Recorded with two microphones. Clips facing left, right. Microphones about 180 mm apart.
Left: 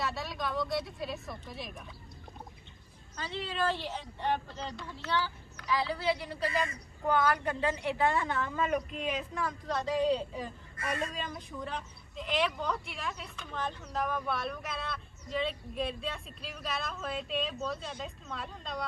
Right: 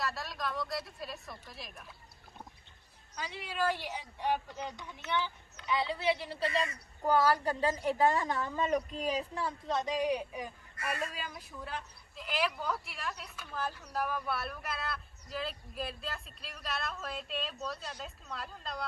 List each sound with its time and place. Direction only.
0.0 s a woman's voice: centre (ahead or behind)
3.2 s a woman's voice: 10° right (ahead or behind)